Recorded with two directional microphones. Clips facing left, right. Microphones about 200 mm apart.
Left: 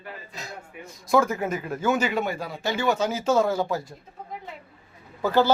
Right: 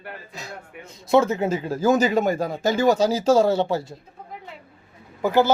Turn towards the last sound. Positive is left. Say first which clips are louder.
# right 2 dB
turn(degrees=-15)  # may be behind; listen again after turning